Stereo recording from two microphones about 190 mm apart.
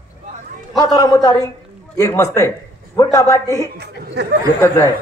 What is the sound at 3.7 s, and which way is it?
Speech, 60° right (ahead or behind).